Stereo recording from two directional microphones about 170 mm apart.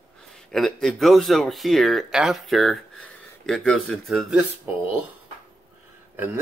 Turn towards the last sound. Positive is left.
turn(degrees=-15)  # may be behind; listen again after turning